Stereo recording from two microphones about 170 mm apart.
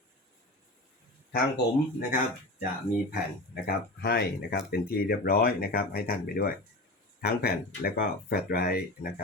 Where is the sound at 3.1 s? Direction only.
70° left (ahead or behind).